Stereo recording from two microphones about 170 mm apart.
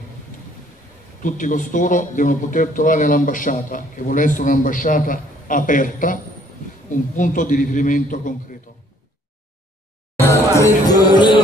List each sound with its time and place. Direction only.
1.2 s a man's voice: 50° left (ahead or behind)
10.1 s music: 15° left (ahead or behind)